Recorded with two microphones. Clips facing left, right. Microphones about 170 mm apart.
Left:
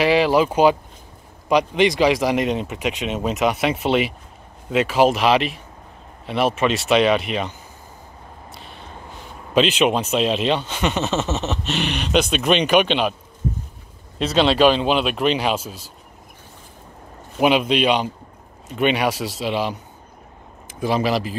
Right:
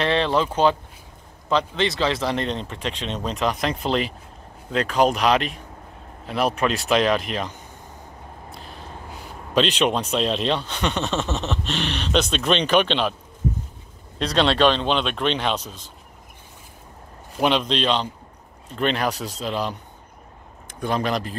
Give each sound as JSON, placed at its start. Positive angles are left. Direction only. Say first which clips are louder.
{"t": 0.0, "sound": "speech", "louder": "left 5 dB", "side_deg": 10}
{"t": 9.5, "sound": "speech", "louder": "left 3 dB", "side_deg": 5}
{"t": 14.1, "sound": "speech", "louder": "left 3 dB", "side_deg": 5}
{"t": 17.4, "sound": "speech", "louder": "left 4 dB", "side_deg": 10}
{"t": 19.1, "sound": "speech", "louder": "left 4 dB", "side_deg": 90}
{"t": 19.4, "sound": "speech", "louder": "left 3 dB", "side_deg": 5}